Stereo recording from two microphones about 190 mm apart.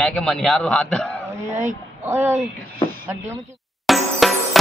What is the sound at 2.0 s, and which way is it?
Speech, 15° right (ahead or behind).